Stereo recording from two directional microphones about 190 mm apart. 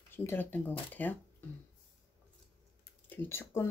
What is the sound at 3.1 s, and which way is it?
Speech, 15° left (ahead or behind).